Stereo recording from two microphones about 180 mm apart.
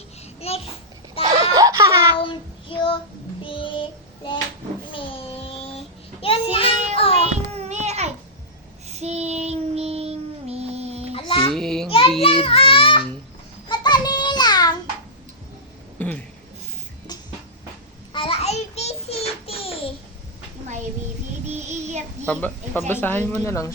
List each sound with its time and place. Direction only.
0.3 s babbling: 35° left (ahead or behind)
1.2 s a sound: 20° right (ahead or behind)
2.2 s child singing: 30° left (ahead or behind)
7.3 s child singing: 40° right (ahead or behind)
11.1 s babbling: 30° left (ahead or behind)
11.5 s child singing: centre (ahead or behind)
11.9 s child singing: 30° left (ahead or behind)
13.7 s a sound: 25° left (ahead or behind)
16.0 s a sound: 10° left (ahead or behind)
18.1 s child singing: 30° left (ahead or behind)
21.5 s child singing: 40° right (ahead or behind)
22.3 s a sound: 10° left (ahead or behind)
22.9 s speech: 10° left (ahead or behind)